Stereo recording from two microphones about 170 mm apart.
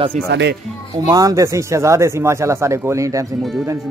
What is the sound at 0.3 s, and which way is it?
Speech, 90° right.